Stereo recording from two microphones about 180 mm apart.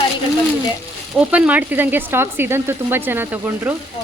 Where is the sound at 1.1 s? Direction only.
5° right (ahead or behind).